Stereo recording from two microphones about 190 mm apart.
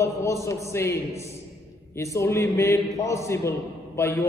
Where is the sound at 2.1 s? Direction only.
15° left (ahead or behind).